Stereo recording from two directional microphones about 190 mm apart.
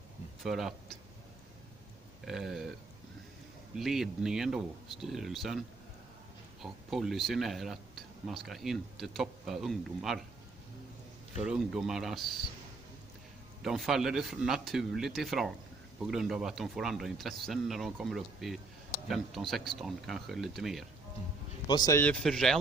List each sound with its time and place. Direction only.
0.4 s speech: centre (ahead or behind)
2.2 s speech: centre (ahead or behind)
3.7 s speech: centre (ahead or behind)
6.6 s speech: centre (ahead or behind)
11.4 s speech: 5° right (ahead or behind)
13.6 s speech: centre (ahead or behind)
21.6 s speech: 20° left (ahead or behind)
22.0 s speech: 5° left (ahead or behind)